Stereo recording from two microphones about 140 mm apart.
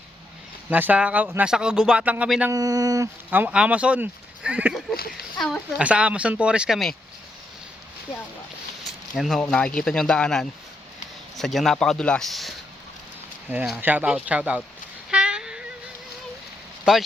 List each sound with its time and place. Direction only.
0.7 s speech: 10° right (ahead or behind)
2.5 s speech: 25° right (ahead or behind)
3.2 s speech: 10° right (ahead or behind)
8.8 s a sound: centre (ahead or behind)
9.4 s speech: 5° left (ahead or behind)
13.7 s speech: 10° right (ahead or behind)
15.1 s cat: 5° right (ahead or behind)
16.9 s speech: 5° right (ahead or behind)